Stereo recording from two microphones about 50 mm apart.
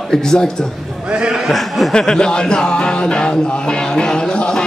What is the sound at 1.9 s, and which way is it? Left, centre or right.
Music, centre.